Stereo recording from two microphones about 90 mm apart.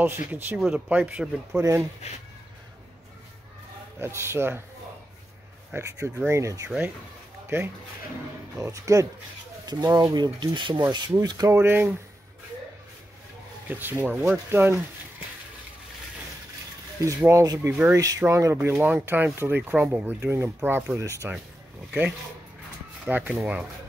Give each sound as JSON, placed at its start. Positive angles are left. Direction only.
{"t": 0.0, "sound": "speech", "side_deg": -20}
{"t": 0.7, "sound": "speech", "side_deg": -15}
{"t": 1.6, "sound": "speech", "side_deg": -35}
{"t": 4.0, "sound": "speech", "side_deg": -30}
{"t": 5.8, "sound": "speech", "side_deg": -30}
{"t": 7.4, "sound": "speech", "side_deg": -25}
{"t": 9.7, "sound": "speech", "side_deg": -50}
{"t": 11.2, "sound": "speech", "side_deg": -40}
{"t": 11.5, "sound": "speech", "side_deg": -25}
{"t": 13.7, "sound": "speech", "side_deg": -20}
{"t": 17.3, "sound": "speech", "side_deg": -35}
{"t": 18.6, "sound": "speech", "side_deg": -20}
{"t": 23.0, "sound": "speech", "side_deg": -15}